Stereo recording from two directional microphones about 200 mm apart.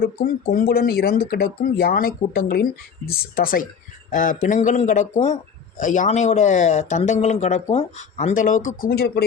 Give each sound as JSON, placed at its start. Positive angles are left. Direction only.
{"t": 0.0, "sound": "a man's voice", "side_deg": 45}